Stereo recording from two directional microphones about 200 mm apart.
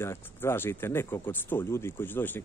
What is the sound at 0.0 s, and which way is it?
Speech, 10° left (ahead or behind).